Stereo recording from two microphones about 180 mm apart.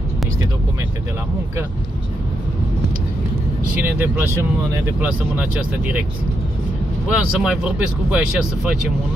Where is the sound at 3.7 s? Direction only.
10° right (ahead or behind).